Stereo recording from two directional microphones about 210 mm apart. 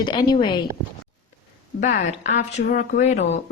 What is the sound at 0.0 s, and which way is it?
Speech, 20° left (ahead or behind).